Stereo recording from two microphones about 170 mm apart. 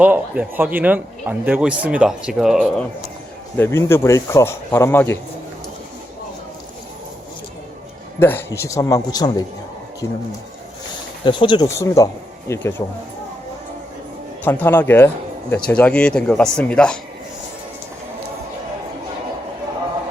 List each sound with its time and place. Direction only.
0.0 s speech: 10° right (ahead or behind)
3.6 s speech: 15° left (ahead or behind)
8.2 s speech: 10° left (ahead or behind)
11.3 s speech: 30° left (ahead or behind)
11.7 s speech: 15° left (ahead or behind)
14.4 s speech: 10° left (ahead or behind)